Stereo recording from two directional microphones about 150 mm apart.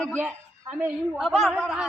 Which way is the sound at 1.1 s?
Centre (ahead or behind).